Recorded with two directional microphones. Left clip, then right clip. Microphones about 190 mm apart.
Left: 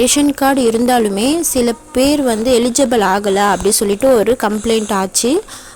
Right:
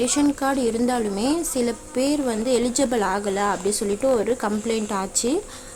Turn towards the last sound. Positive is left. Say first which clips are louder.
# left 8 dB
turn(degrees=40)  # may be behind; listen again after turning